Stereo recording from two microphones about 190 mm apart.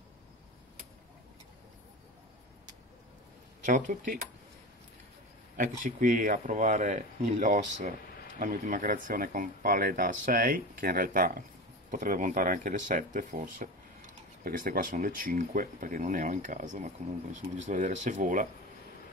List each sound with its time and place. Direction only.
3.6 s speech: 45° right (ahead or behind)
5.6 s speech: 45° right (ahead or behind)